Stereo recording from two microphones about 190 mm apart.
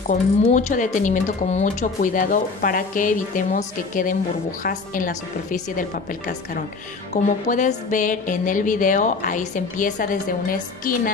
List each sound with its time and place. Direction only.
0.1 s speech: 40° left (ahead or behind)
7.4 s speech: 40° left (ahead or behind)